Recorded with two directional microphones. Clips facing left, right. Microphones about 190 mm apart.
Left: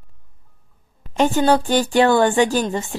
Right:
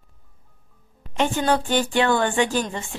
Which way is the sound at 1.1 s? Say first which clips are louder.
Left 5 dB; 40° left (ahead or behind).